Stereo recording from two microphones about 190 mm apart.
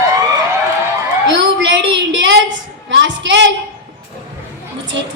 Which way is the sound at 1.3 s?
70° right (ahead or behind).